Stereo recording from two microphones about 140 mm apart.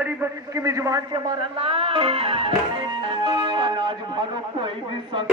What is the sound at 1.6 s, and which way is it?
Music, 40° right (ahead or behind).